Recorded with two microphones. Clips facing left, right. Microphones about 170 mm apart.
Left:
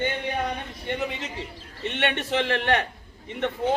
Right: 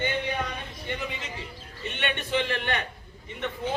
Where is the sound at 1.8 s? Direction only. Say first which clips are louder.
Left 5 dB; 80° left.